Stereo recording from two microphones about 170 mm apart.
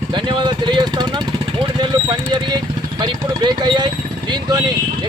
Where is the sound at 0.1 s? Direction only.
30° right (ahead or behind).